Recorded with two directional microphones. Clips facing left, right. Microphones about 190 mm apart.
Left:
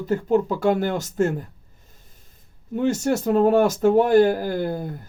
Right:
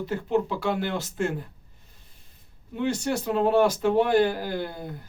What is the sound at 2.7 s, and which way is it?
Speech, 45° left (ahead or behind).